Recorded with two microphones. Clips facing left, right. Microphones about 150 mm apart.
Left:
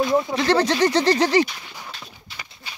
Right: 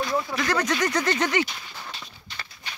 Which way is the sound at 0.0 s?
25° left (ahead or behind).